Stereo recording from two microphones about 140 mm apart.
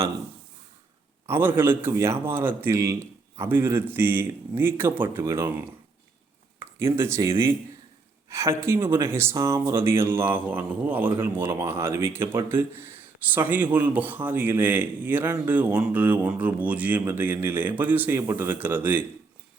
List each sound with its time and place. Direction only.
1.3 s speech: 15° right (ahead or behind)